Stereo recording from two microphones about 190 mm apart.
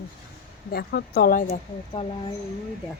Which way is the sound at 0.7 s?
60° left (ahead or behind).